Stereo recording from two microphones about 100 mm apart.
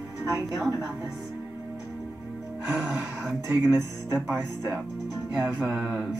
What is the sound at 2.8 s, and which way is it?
Speech, 25° right (ahead or behind).